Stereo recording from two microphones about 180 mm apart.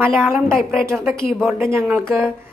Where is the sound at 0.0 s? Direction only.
10° right (ahead or behind).